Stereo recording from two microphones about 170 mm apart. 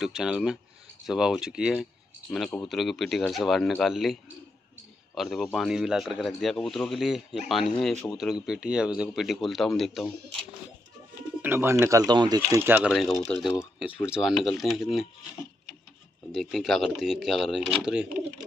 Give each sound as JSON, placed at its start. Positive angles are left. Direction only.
{"t": 0.0, "sound": "speech", "side_deg": -5}
{"t": 11.4, "sound": "speech", "side_deg": -15}
{"t": 12.4, "sound": "speech", "side_deg": -15}
{"t": 12.9, "sound": "speech", "side_deg": 0}
{"t": 16.3, "sound": "speech", "side_deg": 0}